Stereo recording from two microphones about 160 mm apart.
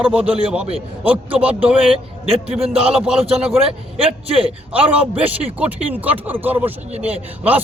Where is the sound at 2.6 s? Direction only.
40° right (ahead or behind).